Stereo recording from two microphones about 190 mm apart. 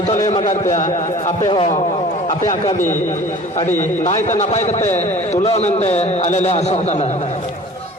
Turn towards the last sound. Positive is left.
turn(degrees=40)  # may be behind; listen again after turning